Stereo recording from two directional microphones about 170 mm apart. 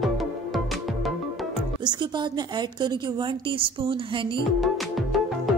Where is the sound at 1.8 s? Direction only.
25° right (ahead or behind).